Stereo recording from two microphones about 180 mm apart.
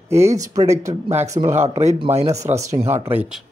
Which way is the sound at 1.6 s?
35° right (ahead or behind).